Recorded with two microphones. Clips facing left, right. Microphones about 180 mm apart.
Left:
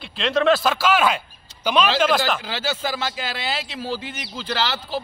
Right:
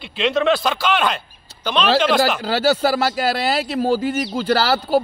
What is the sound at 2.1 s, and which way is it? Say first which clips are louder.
Speech: right 4 dB; centre (ahead or behind).